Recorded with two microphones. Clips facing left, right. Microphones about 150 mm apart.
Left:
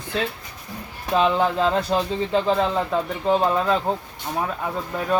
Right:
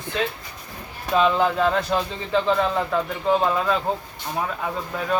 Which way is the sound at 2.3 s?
25° left (ahead or behind).